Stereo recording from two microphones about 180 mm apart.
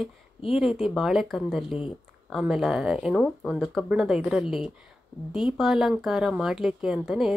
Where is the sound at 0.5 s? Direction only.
Centre (ahead or behind).